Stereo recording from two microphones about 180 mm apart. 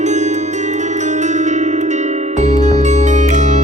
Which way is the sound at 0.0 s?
40° right (ahead or behind).